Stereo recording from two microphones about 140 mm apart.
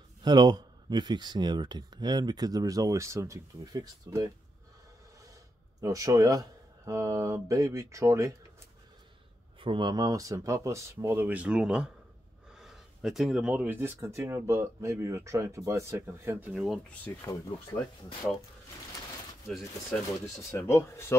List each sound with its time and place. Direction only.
0.2 s speech: 30° right (ahead or behind)
5.8 s speech: 25° right (ahead or behind)
9.6 s speech: 35° right (ahead or behind); by 16.4 s 20° right (ahead or behind)
16.5 s speech: centre (ahead or behind)
17.0 s speech: 15° left (ahead or behind)
20.5 s speech: 20° left (ahead or behind)